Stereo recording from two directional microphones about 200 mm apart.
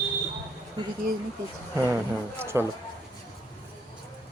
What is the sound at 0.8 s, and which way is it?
Speech, 20° right (ahead or behind).